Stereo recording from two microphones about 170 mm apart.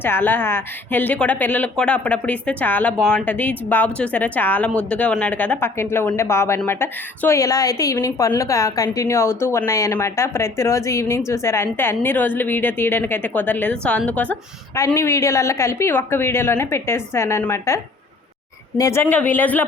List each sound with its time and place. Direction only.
0.0 s a woman's voice: 10° left (ahead or behind)
18.8 s a woman's voice: 15° left (ahead or behind)